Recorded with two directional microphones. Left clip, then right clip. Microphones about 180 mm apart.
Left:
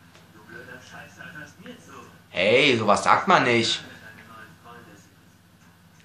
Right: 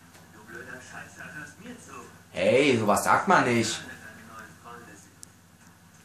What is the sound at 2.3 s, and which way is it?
Speech, 20° left (ahead or behind).